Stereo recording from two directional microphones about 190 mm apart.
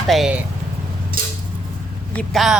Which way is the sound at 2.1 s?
Centre (ahead or behind).